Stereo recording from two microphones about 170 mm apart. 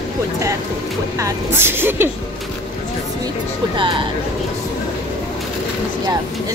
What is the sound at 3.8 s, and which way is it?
Speech, 30° right (ahead or behind).